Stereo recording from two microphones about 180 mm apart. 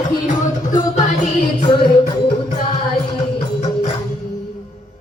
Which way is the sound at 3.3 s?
35° left (ahead or behind).